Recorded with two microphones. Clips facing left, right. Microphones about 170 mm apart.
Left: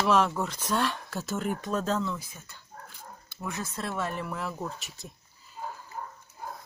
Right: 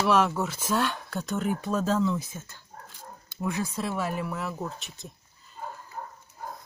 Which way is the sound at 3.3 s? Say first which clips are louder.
Right 6 dB; 15° right (ahead or behind).